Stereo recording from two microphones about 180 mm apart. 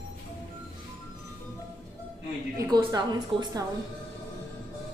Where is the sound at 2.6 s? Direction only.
20° right (ahead or behind).